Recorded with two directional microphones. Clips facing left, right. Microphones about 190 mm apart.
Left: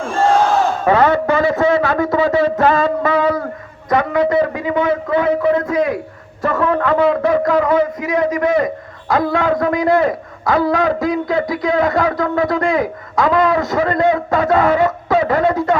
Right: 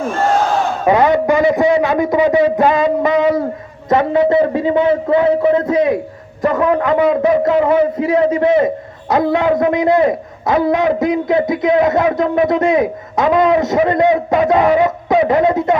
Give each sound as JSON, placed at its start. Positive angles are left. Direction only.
{"t": 0.9, "sound": "a man's voice", "side_deg": -15}